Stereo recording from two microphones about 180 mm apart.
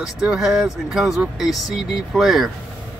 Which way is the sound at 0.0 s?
5° right (ahead or behind).